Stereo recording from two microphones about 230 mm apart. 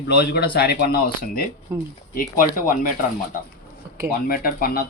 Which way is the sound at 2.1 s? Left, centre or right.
Left.